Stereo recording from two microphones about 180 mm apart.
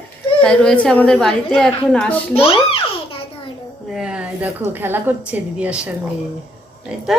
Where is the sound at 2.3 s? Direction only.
30° left (ahead or behind).